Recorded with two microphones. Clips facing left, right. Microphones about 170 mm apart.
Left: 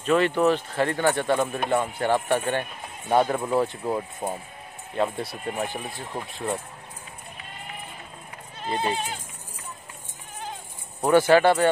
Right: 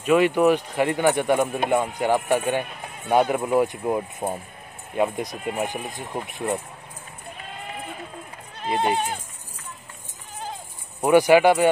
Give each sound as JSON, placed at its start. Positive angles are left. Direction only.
{"t": 0.0, "sound": "speech", "side_deg": -10}
{"t": 8.9, "sound": "speech", "side_deg": -55}
{"t": 11.0, "sound": "speech", "side_deg": -15}